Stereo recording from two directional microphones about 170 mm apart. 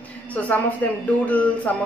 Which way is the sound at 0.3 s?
10° left (ahead or behind).